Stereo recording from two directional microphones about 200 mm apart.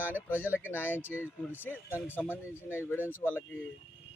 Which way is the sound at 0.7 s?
10° left (ahead or behind).